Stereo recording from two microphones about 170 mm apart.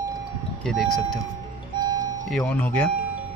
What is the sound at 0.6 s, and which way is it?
Speech, centre (ahead or behind).